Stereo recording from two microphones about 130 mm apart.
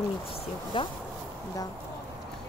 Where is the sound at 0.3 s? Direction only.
45° left (ahead or behind).